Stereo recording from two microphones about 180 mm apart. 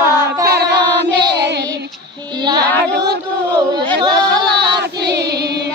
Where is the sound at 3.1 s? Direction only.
25° right (ahead or behind).